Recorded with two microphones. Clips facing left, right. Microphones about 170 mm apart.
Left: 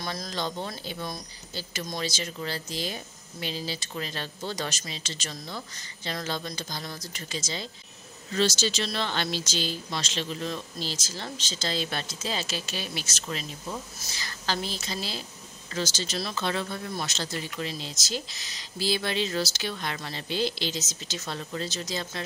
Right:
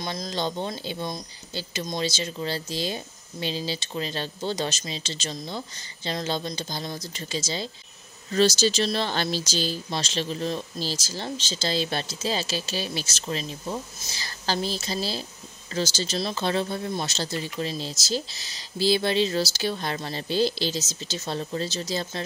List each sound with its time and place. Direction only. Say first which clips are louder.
0.0 s speech: right 3 dB; 20° right (ahead or behind)